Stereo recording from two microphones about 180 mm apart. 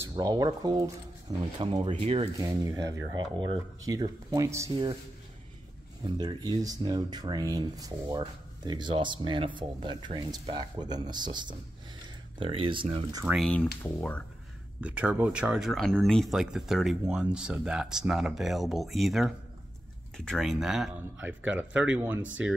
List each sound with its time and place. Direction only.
0.0 s speech: 20° right (ahead or behind)
2.3 s speech: 20° right (ahead or behind)
6.0 s speech: 25° right (ahead or behind)
13.4 s speech: 5° left (ahead or behind)
14.8 s speech: 5° right (ahead or behind)